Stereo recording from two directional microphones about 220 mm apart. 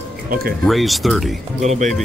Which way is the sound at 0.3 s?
45° right (ahead or behind).